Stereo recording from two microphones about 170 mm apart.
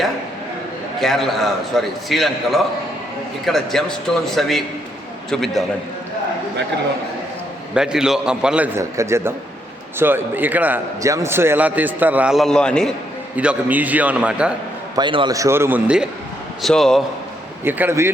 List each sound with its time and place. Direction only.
0.9 s a man's voice: centre (ahead or behind)
7.7 s a man's voice: 5° right (ahead or behind)
13.3 s a man's voice: 10° right (ahead or behind)
14.9 s a man's voice: 30° right (ahead or behind); by 16.0 s 10° right (ahead or behind)
16.6 s a man's voice: centre (ahead or behind)
17.6 s a man's voice: 10° right (ahead or behind)